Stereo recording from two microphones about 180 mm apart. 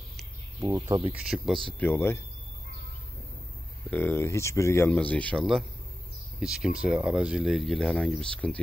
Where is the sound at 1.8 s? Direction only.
10° left (ahead or behind).